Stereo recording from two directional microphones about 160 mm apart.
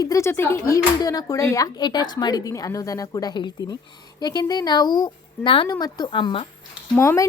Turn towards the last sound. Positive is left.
turn(degrees=15)  # may be behind; listen again after turning